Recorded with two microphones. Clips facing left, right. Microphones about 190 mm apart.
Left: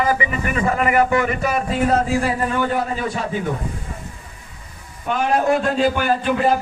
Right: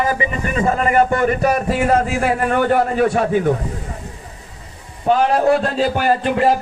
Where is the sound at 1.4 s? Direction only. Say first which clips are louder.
Right 3 dB; 55° right (ahead or behind).